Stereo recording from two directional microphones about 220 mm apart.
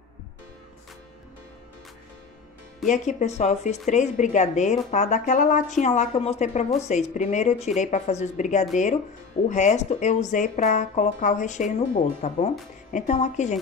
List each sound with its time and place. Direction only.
2.9 s speech: 30° left (ahead or behind)